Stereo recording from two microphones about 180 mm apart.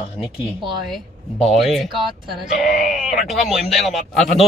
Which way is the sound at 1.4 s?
Centre (ahead or behind).